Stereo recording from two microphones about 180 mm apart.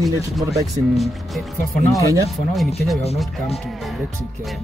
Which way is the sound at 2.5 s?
Centre (ahead or behind).